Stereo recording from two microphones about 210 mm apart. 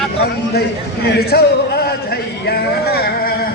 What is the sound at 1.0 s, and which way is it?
Speech, 50° left (ahead or behind).